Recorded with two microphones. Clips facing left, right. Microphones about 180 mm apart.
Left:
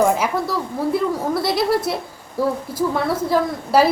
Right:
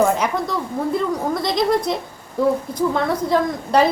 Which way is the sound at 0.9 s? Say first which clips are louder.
Left 1 dB; 5° left (ahead or behind).